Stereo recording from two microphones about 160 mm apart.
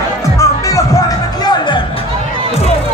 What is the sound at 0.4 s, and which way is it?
Music, 20° left (ahead or behind).